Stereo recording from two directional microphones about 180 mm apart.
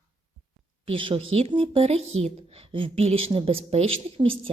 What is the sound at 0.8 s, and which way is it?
A woman's voice, 30° right (ahead or behind).